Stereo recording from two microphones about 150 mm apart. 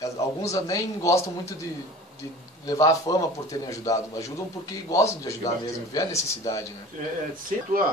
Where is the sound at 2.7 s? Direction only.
25° left (ahead or behind).